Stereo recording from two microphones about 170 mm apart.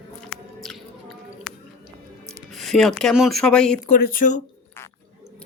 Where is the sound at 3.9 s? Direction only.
55° left (ahead or behind).